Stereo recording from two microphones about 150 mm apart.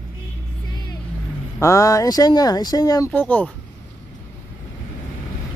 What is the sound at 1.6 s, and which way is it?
Speech, 20° left (ahead or behind).